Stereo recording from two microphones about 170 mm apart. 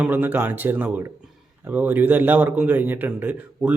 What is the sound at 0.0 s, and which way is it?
A man's voice, 10° right (ahead or behind).